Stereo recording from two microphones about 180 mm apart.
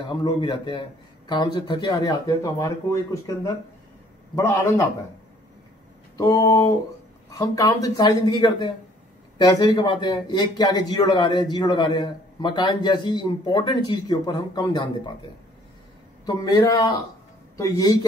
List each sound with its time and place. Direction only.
0.0 s a man's voice: 25° left (ahead or behind)
4.4 s a man's voice: 15° left (ahead or behind)
6.1 s a man's voice: 20° left (ahead or behind)
16.3 s a man's voice: 20° left (ahead or behind)